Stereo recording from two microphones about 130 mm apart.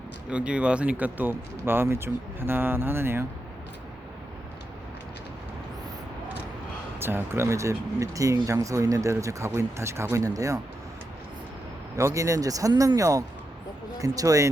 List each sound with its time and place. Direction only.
0.3 s speech: 10° right (ahead or behind)
7.0 s speech: 20° right (ahead or behind)
11.9 s speech: 25° right (ahead or behind)